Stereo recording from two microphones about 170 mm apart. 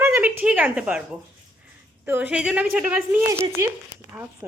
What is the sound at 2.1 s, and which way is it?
A woman's voice, 10° right (ahead or behind).